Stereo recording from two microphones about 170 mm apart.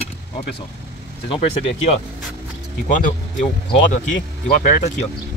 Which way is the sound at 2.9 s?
50° left (ahead or behind).